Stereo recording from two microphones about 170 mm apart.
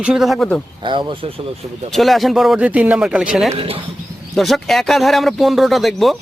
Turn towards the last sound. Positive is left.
turn(degrees=0)  # may be behind; listen again after turning